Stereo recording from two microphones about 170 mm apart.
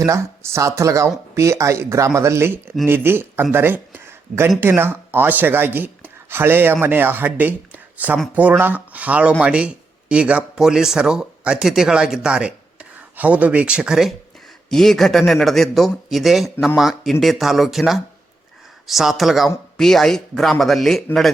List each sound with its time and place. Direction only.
0.0 s speech: 15° right (ahead or behind); by 21.3 s centre (ahead or behind)